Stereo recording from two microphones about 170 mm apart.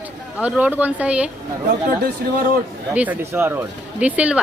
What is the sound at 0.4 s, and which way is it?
Speech, 5° right (ahead or behind).